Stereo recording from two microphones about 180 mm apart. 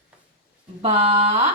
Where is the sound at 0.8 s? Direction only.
35° right (ahead or behind).